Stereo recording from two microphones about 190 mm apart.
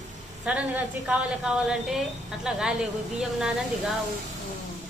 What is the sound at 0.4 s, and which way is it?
A woman's voice, 5° right (ahead or behind).